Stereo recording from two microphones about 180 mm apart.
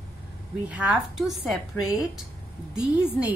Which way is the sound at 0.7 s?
10° right (ahead or behind).